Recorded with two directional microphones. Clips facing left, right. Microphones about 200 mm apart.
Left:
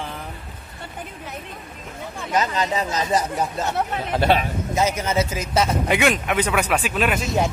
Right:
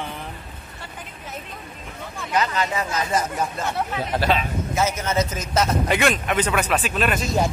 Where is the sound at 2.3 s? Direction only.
20° left (ahead or behind).